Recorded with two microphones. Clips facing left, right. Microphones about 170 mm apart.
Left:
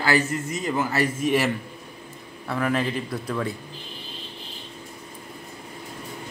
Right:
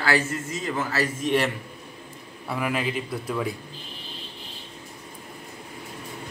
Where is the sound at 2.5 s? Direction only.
10° right (ahead or behind).